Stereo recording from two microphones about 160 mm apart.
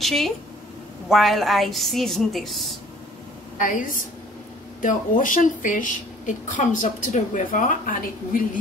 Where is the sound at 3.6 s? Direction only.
55° left (ahead or behind).